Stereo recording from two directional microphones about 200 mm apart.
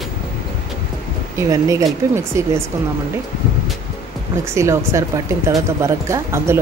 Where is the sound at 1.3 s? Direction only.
15° right (ahead or behind).